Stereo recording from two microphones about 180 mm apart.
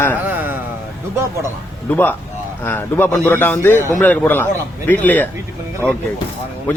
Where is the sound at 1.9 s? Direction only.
10° left (ahead or behind).